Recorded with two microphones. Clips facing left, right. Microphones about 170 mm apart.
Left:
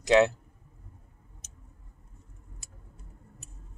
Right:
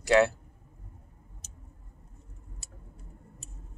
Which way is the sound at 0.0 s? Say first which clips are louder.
Left 1 dB; 20° left (ahead or behind).